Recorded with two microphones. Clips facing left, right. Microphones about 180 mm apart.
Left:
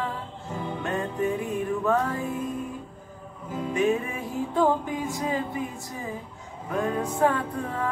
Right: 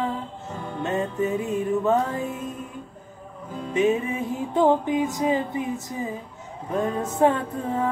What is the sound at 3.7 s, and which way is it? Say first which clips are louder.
Music: right 3 dB; 20° right (ahead or behind).